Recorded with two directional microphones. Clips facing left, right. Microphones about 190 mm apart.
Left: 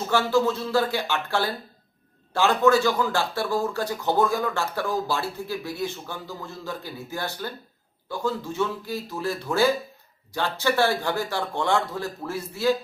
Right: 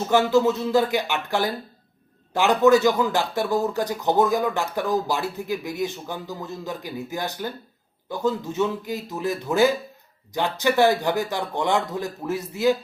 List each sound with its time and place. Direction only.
0.1 s speech: 20° right (ahead or behind)